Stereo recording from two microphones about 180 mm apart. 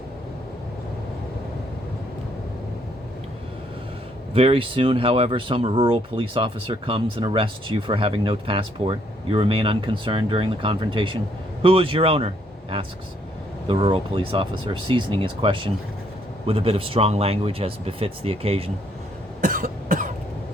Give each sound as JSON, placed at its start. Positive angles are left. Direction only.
{"t": 4.4, "sound": "speech", "side_deg": -30}
{"t": 13.7, "sound": "speech", "side_deg": -30}
{"t": 19.4, "sound": "cough", "side_deg": -50}